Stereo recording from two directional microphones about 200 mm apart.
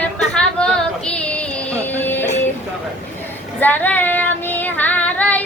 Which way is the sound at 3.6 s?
10° left (ahead or behind).